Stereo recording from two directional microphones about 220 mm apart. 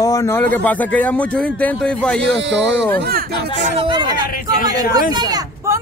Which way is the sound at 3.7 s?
20° right (ahead or behind).